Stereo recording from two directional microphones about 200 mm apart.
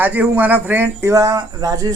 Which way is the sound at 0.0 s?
10° right (ahead or behind).